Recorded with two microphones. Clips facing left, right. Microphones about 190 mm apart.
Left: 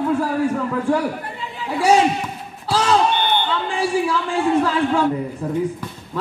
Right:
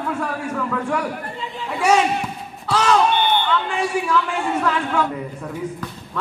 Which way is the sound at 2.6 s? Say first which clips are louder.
Even; 30° left (ahead or behind).